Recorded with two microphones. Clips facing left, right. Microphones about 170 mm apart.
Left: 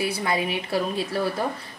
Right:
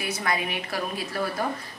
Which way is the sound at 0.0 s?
30° left (ahead or behind).